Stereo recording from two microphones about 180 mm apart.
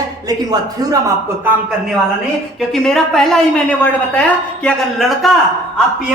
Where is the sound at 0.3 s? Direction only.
20° right (ahead or behind).